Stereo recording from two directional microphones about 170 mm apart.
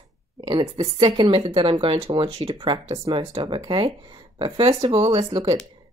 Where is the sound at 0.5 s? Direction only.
30° right (ahead or behind).